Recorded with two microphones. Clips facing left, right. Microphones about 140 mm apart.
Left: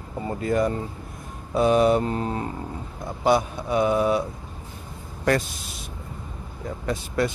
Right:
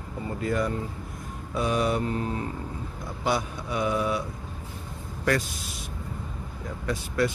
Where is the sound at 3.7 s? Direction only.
30° left (ahead or behind).